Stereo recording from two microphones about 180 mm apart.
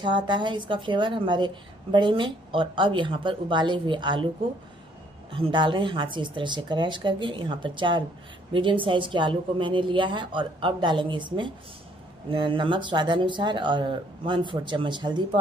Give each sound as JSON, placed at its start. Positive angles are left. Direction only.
{"t": 0.0, "sound": "a woman's voice", "side_deg": -25}
{"t": 5.3, "sound": "a woman's voice", "side_deg": -30}